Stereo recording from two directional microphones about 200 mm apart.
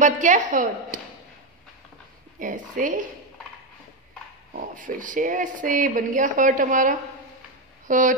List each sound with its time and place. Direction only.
0.0 s speech: 40° right (ahead or behind)
2.3 s speech: 40° right (ahead or behind)
4.7 s speech: 40° right (ahead or behind)